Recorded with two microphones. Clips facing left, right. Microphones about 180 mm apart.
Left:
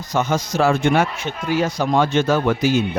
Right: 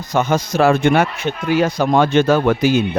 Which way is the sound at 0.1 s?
55° right (ahead or behind).